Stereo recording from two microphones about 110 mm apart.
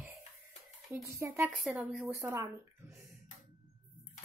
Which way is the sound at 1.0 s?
25° right (ahead or behind).